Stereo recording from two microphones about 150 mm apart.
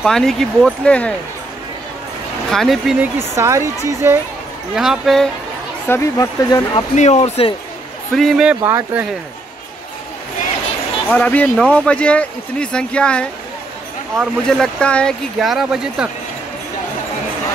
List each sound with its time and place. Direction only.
0.0 s speech: centre (ahead or behind)
2.5 s speech: centre (ahead or behind)
3.0 s speech: 15° right (ahead or behind)
4.7 s speech: 5° right (ahead or behind)
5.9 s speech: 20° left (ahead or behind)
7.0 s speech: 45° left (ahead or behind)
8.1 s speech: centre (ahead or behind)
8.6 s speech: 15° right (ahead or behind)
11.1 s speech: 10° left (ahead or behind)